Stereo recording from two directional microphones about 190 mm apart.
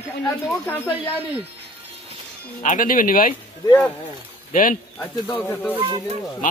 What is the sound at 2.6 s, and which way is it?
Speech, 45° left (ahead or behind).